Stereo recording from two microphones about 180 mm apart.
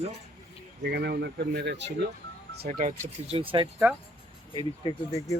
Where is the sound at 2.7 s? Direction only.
45° right (ahead or behind).